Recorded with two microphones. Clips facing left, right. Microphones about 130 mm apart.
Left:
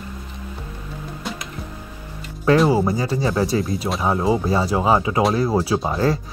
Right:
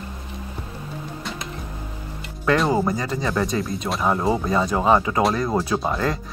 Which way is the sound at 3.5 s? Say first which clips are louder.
Left 3 dB; 5° left (ahead or behind).